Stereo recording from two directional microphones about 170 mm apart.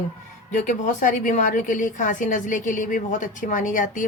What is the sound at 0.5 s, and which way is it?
A woman's voice, 50° left (ahead or behind).